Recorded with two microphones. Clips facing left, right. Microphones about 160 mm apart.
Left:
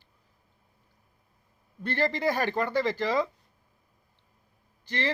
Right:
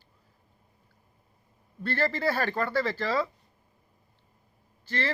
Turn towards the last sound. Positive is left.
turn(degrees=15)  # may be behind; listen again after turning